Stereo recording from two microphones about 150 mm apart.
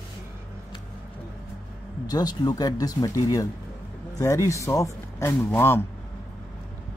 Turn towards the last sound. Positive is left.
turn(degrees=15)  # may be behind; listen again after turning